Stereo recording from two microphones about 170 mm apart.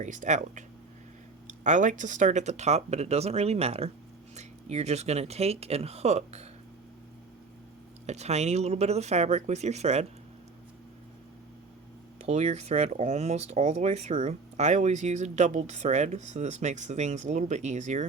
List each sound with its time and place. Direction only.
0.0 s speech: 45° right (ahead or behind)
8.0 s speech: 40° right (ahead or behind)
12.2 s speech: 40° right (ahead or behind)